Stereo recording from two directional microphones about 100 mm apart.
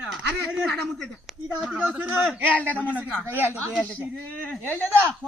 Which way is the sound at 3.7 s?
5° left (ahead or behind).